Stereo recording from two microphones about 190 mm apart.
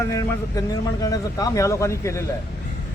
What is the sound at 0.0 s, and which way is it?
Speech, 15° left (ahead or behind).